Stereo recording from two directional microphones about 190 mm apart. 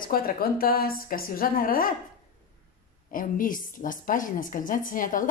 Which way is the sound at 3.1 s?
45° left (ahead or behind).